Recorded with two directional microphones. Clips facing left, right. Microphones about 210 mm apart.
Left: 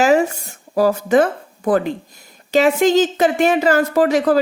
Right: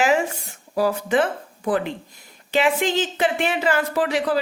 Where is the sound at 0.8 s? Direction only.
45° left (ahead or behind).